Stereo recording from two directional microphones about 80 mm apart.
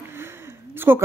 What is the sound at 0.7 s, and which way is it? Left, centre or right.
Speech, right.